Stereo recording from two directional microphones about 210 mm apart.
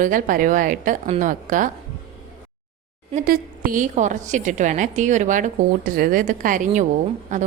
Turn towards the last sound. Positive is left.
turn(degrees=-35)  # may be behind; listen again after turning